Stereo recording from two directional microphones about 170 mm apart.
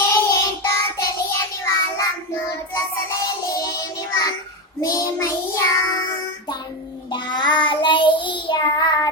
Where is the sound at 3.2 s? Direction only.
20° left (ahead or behind).